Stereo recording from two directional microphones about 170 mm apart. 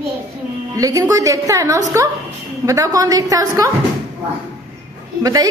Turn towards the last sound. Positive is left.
turn(degrees=-20)  # may be behind; listen again after turning